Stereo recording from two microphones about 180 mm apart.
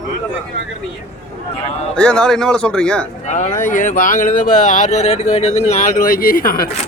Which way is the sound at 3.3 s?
45° left (ahead or behind).